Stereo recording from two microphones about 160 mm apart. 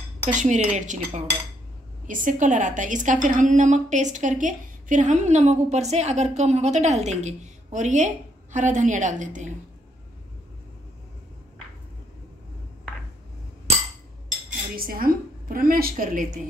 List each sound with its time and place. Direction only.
0.3 s a woman's voice: 50° right (ahead or behind)
14.8 s a woman's voice: 65° right (ahead or behind)